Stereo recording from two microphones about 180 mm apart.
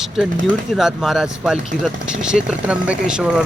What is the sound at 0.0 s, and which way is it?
Speech, centre (ahead or behind).